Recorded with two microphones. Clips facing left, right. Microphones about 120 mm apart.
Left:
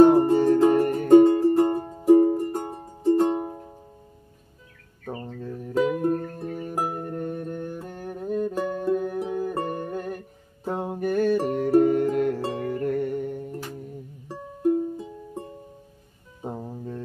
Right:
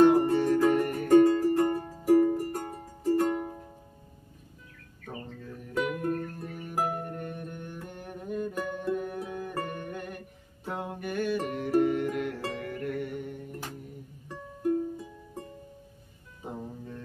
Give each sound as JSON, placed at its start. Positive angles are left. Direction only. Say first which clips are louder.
{"t": 0.1, "sound": "music", "louder": "left 5 dB", "side_deg": 30}
{"t": 5.8, "sound": "music", "louder": "left 7 dB", "side_deg": 25}
{"t": 14.2, "sound": "music", "louder": "left 6 dB", "side_deg": 25}
{"t": 16.4, "sound": "music", "louder": "left 5 dB", "side_deg": 30}